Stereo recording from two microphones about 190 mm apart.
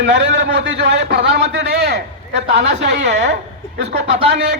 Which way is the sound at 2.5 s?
40° right (ahead or behind).